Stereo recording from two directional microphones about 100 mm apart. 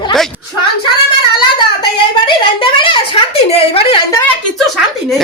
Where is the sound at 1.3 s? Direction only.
50° left (ahead or behind).